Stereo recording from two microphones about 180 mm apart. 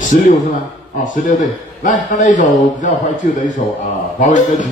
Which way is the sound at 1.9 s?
45° left (ahead or behind).